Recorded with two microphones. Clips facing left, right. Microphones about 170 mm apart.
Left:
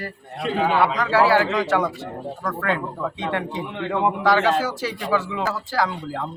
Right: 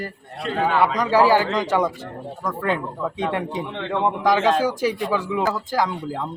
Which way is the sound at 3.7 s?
5° left (ahead or behind).